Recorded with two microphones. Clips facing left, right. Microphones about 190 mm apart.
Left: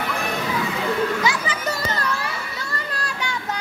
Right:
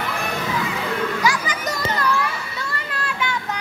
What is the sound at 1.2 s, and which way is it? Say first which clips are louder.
Children playing: right 1 dB; 30° left (ahead or behind).